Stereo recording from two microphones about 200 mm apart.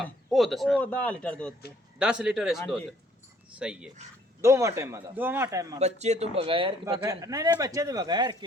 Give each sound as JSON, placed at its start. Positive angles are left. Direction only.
{"t": 0.3, "sound": "a man's voice", "side_deg": 0}
{"t": 2.0, "sound": "a man's voice", "side_deg": -5}
{"t": 4.4, "sound": "speech", "side_deg": -15}
{"t": 5.8, "sound": "speech", "side_deg": -35}